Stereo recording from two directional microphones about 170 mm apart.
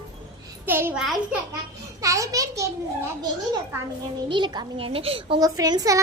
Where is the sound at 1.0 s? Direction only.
Centre (ahead or behind).